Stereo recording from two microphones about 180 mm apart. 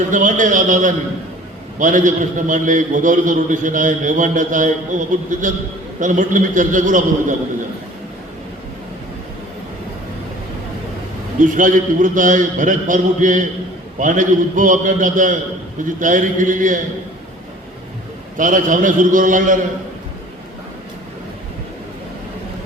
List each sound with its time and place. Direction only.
0.1 s a man's voice: 45° right (ahead or behind)
11.3 s a man's voice: 45° right (ahead or behind)
18.3 s a man's voice: 45° right (ahead or behind)